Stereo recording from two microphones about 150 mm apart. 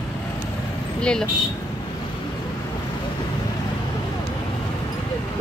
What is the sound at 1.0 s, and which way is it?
Speech, 5° left (ahead or behind).